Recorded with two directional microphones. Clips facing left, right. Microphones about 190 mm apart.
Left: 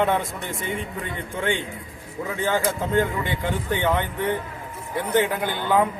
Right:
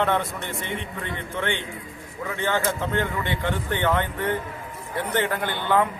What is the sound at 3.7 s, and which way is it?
A man's voice, 10° left (ahead or behind).